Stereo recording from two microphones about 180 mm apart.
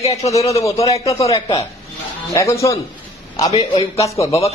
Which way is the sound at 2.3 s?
15° left (ahead or behind).